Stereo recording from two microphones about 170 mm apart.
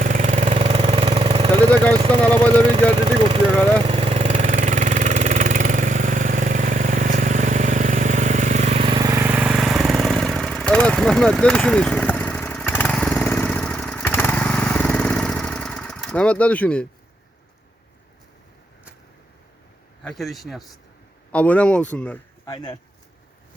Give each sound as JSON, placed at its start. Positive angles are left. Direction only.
{"t": 0.0, "sound": "vehicle", "side_deg": -45}
{"t": 0.5, "sound": "vehicle", "side_deg": -35}
{"t": 1.9, "sound": "speech", "side_deg": -30}
{"t": 2.2, "sound": "speech", "side_deg": 10}
{"t": 3.8, "sound": "engine", "side_deg": -35}
{"t": 9.1, "sound": "vehicle", "side_deg": -10}
{"t": 20.1, "sound": "a man's voice", "side_deg": 0}
{"t": 22.4, "sound": "speech", "side_deg": 20}